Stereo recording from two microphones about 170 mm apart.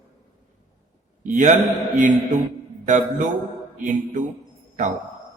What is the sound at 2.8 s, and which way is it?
Speech, 45° right (ahead or behind).